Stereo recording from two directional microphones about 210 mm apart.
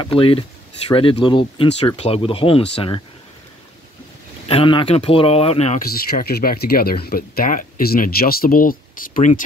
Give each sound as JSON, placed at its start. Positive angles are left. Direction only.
{"t": 0.0, "sound": "speech", "side_deg": 25}
{"t": 4.5, "sound": "speech", "side_deg": 25}
{"t": 5.8, "sound": "speech", "side_deg": 45}